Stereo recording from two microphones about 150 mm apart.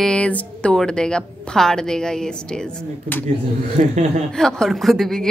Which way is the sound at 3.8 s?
55° right (ahead or behind).